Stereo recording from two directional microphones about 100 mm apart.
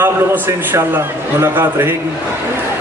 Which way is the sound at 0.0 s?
25° right (ahead or behind).